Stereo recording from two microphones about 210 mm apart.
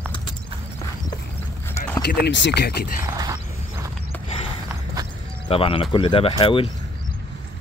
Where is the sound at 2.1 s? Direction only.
55° left (ahead or behind).